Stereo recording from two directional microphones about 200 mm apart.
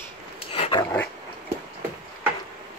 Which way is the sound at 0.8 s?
10° left (ahead or behind).